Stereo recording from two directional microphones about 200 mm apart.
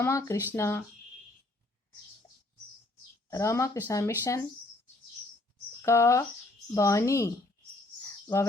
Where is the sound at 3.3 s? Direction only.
15° left (ahead or behind).